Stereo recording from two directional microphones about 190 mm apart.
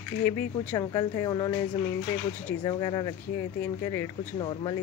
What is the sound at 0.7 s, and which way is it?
Speech, 20° left (ahead or behind).